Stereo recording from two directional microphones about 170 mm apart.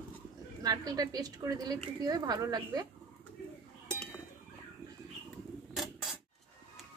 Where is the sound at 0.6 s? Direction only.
20° right (ahead or behind).